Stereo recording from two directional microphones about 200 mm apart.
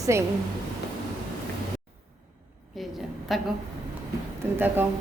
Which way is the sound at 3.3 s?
Centre (ahead or behind).